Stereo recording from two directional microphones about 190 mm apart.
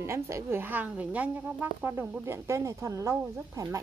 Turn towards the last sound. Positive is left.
turn(degrees=-15)  # may be behind; listen again after turning